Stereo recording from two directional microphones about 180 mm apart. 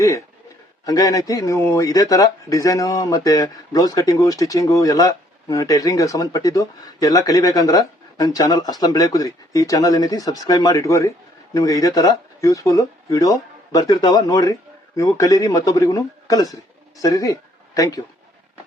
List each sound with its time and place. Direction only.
0.0 s a man's voice: 15° left (ahead or behind)